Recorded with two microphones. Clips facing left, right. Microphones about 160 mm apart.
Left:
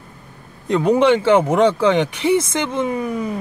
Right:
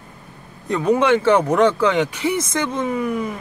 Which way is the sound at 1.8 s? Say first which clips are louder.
Left 2 dB; 20° left (ahead or behind).